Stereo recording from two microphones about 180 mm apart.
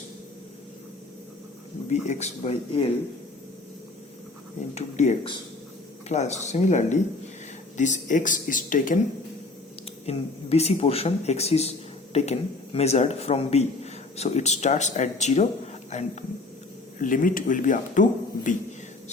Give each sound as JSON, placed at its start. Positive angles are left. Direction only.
{"t": 1.9, "sound": "speech", "side_deg": 40}
{"t": 4.7, "sound": "speech", "side_deg": 40}
{"t": 10.1, "sound": "speech", "side_deg": 35}